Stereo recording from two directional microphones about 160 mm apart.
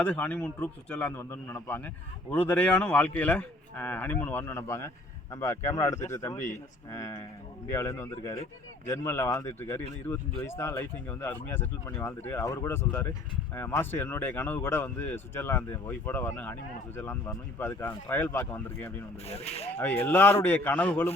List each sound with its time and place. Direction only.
0.0 s speech: 10° left (ahead or behind)
19.3 s speech: 40° left (ahead or behind)
19.8 s speech: 10° left (ahead or behind)